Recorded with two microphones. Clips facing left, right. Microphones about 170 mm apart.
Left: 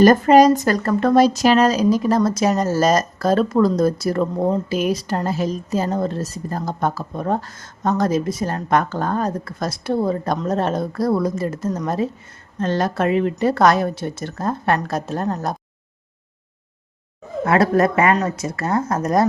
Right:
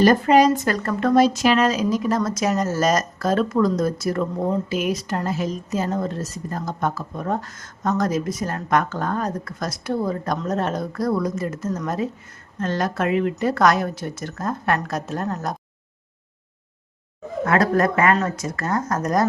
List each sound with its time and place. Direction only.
0.0 s a woman's voice: 45° left (ahead or behind)
17.4 s a woman's voice: 25° left (ahead or behind)